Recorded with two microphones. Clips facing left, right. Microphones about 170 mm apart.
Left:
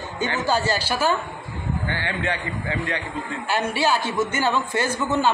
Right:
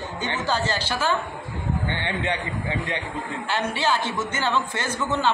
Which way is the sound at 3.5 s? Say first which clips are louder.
Left 2 dB; 10° left (ahead or behind).